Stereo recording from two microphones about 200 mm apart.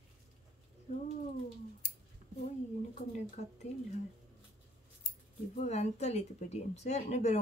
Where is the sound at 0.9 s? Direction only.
40° left (ahead or behind).